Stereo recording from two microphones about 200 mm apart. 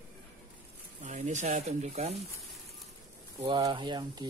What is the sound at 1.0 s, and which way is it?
Speech, 35° right (ahead or behind).